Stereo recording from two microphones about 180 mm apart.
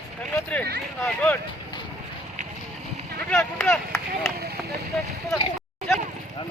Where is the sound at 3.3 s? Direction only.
5° left (ahead or behind).